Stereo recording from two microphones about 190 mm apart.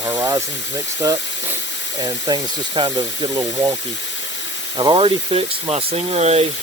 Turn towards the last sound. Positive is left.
turn(degrees=-35)  # may be behind; listen again after turning